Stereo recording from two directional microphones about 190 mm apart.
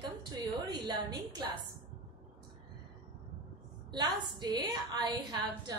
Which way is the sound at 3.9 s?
20° right (ahead or behind).